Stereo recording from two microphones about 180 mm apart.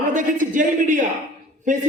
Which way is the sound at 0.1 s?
45° right (ahead or behind).